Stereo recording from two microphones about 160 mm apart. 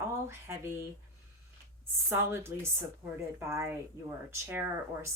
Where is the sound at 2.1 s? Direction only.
15° right (ahead or behind).